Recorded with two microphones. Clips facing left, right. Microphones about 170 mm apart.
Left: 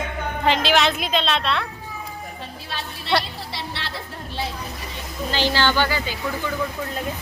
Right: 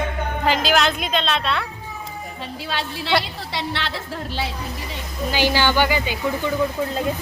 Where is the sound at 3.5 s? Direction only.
90° right.